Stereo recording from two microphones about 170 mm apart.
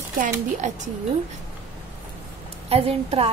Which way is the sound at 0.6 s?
45° right (ahead or behind).